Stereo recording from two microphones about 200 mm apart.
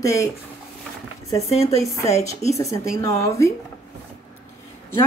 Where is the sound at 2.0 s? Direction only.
15° left (ahead or behind).